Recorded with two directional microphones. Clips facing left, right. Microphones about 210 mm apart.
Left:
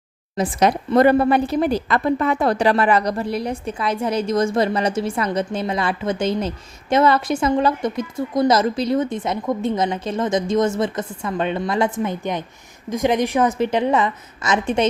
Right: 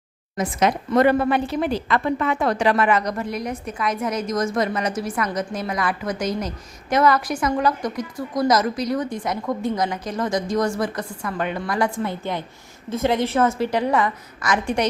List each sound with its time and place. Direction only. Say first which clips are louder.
0.3 s a woman's voice: left 3 dB; 30° left (ahead or behind)